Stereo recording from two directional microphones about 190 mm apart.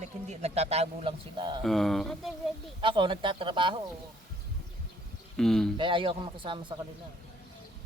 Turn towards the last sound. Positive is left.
turn(degrees=-25)  # may be behind; listen again after turning